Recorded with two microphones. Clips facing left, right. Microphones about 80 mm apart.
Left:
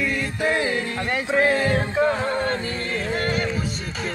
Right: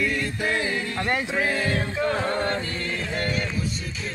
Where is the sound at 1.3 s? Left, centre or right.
Left.